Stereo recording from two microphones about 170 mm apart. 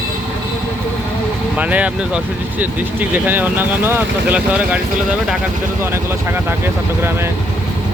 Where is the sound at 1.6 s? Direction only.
10° right (ahead or behind).